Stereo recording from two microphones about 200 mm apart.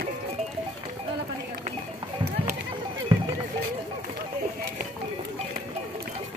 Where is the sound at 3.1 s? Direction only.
20° right (ahead or behind).